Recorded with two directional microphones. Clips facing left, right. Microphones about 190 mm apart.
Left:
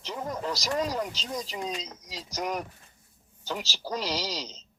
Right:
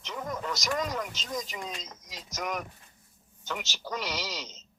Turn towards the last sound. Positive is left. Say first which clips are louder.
# left 4 dB
turn(degrees=35)  # may be behind; listen again after turning